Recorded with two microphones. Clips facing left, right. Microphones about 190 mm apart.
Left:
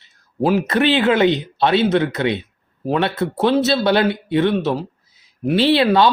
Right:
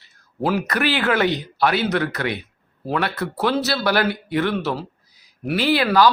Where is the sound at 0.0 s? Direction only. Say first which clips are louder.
Left 4 dB; 20° left (ahead or behind).